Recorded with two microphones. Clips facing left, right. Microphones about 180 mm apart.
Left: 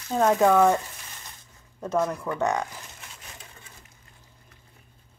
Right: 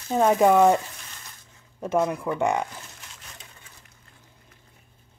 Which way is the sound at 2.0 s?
20° right (ahead or behind).